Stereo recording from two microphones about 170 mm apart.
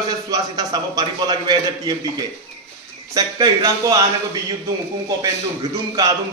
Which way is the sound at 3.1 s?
20° right (ahead or behind).